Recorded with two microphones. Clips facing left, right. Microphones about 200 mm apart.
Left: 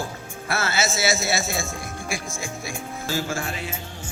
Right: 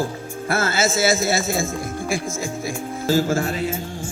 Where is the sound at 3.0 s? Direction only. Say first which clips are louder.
Right 9 dB; 40° right (ahead or behind).